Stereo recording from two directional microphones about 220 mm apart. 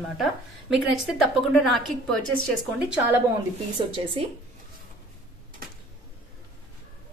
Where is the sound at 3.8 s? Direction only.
25° right (ahead or behind).